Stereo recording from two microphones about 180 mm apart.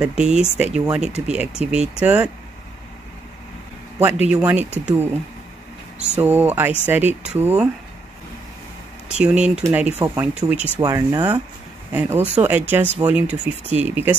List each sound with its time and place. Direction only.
0.0 s speech: 5° right (ahead or behind)
4.0 s speech: 5° right (ahead or behind)
9.1 s speech: 5° right (ahead or behind)
10.8 s speech: 20° right (ahead or behind)